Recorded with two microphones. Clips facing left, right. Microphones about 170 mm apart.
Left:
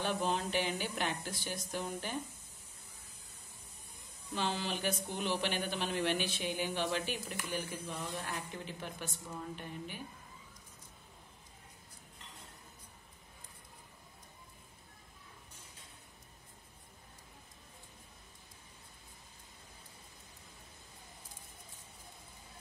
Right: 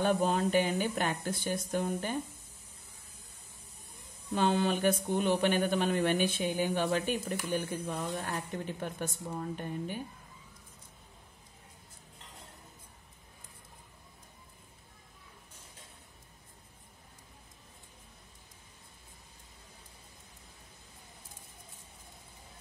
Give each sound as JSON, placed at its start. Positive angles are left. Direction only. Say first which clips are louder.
{"t": 0.0, "sound": "speech", "louder": "right 6 dB", "side_deg": -45}
{"t": 4.4, "sound": "speech", "louder": "right 8 dB", "side_deg": -55}